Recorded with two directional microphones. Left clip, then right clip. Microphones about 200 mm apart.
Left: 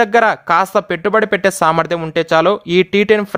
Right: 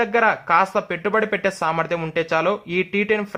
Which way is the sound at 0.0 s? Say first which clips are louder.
Left 6 dB; 50° left (ahead or behind).